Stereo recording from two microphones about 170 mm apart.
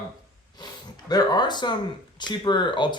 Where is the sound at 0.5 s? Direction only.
25° left (ahead or behind).